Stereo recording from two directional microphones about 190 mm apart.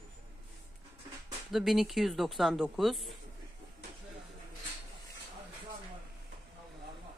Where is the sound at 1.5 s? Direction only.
Centre (ahead or behind).